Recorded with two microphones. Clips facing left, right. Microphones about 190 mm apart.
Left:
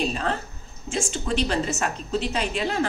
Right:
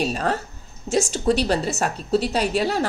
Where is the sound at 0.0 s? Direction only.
40° right (ahead or behind).